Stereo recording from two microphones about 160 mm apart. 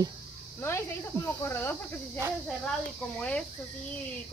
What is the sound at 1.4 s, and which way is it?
Speech, 15° left (ahead or behind).